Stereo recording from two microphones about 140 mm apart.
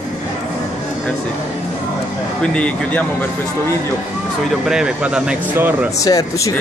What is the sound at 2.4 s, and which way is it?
Speech, 10° left (ahead or behind).